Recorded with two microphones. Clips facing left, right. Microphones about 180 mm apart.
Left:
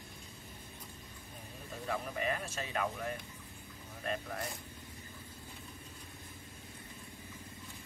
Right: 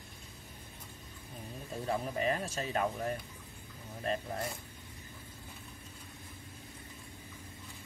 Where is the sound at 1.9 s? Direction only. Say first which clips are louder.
Right 3 dB; 35° right (ahead or behind).